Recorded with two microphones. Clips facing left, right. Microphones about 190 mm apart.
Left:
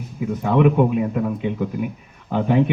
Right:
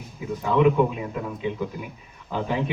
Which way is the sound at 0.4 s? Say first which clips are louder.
Left 3 dB; 55° left (ahead or behind).